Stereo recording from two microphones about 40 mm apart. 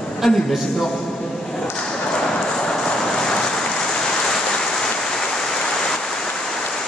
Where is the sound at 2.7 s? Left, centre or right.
Centre.